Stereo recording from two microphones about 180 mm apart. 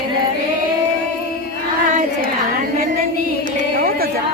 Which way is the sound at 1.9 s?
45° right (ahead or behind).